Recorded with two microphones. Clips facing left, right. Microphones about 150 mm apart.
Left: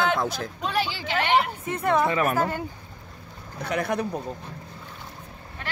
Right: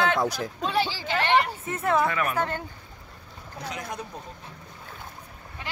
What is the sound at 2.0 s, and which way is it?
Speech, 30° left (ahead or behind).